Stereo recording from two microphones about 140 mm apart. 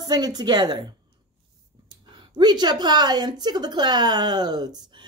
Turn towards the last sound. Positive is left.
turn(degrees=-30)  # may be behind; listen again after turning